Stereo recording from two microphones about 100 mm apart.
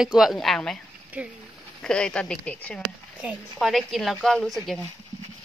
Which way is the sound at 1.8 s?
10° left (ahead or behind).